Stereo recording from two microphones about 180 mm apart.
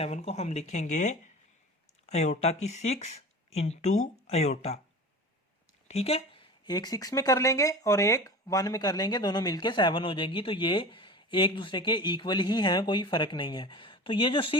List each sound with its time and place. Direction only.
0.0 s speech: 40° left (ahead or behind)
5.9 s speech: 35° left (ahead or behind)